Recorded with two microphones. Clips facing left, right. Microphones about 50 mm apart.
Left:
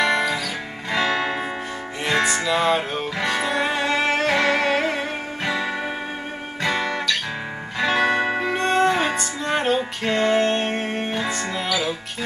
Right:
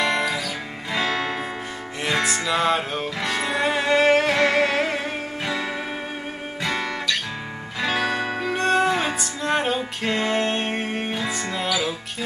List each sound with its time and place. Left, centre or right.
0.0 s music: centre
6.6 s guitar: centre
8.0 s music: centre
8.5 s music: centre